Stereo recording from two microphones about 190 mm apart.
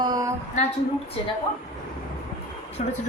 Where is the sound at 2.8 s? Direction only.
35° left (ahead or behind).